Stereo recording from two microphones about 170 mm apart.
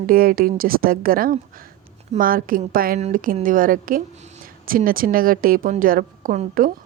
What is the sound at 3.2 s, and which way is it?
A woman's voice, 55° right (ahead or behind).